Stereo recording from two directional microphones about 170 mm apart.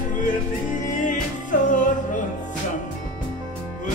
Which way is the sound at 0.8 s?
50° left (ahead or behind).